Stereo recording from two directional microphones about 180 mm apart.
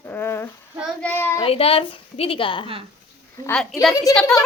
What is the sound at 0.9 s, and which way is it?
Speech, 10° left (ahead or behind).